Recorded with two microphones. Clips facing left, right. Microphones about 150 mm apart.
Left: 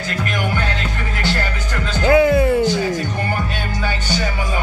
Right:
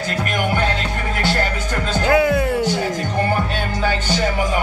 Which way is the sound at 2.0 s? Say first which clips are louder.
Left 4 dB; centre (ahead or behind).